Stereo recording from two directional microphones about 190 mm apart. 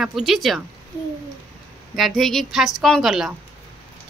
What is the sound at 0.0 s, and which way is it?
Speech, centre (ahead or behind).